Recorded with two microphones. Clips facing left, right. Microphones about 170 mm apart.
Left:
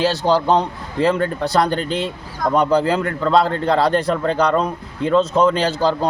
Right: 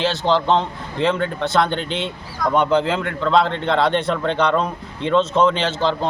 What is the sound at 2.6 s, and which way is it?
Speech, 40° left (ahead or behind).